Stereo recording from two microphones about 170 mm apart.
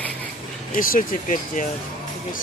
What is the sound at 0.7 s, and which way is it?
Speech, 55° left (ahead or behind).